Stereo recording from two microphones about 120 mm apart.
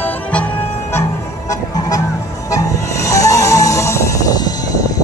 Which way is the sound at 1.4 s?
30° left (ahead or behind).